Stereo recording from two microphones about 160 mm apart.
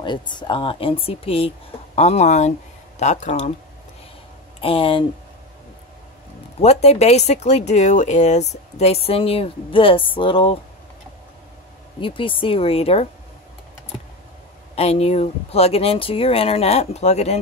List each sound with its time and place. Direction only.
0.0 s speech: 30° left (ahead or behind); by 3.5 s 45° left (ahead or behind)
4.6 s speech: 35° left (ahead or behind)
6.6 s speech: 40° left (ahead or behind)
12.0 s speech: 30° left (ahead or behind)
14.8 s speech: 40° left (ahead or behind)